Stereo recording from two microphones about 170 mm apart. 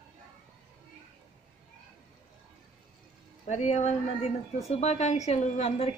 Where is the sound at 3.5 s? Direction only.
45° left (ahead or behind).